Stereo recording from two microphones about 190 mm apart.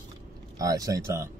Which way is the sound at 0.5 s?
20° right (ahead or behind).